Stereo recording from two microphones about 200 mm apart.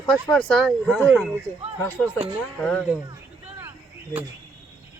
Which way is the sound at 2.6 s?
5° left (ahead or behind).